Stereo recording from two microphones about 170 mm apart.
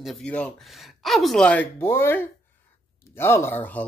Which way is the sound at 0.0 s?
5° left (ahead or behind).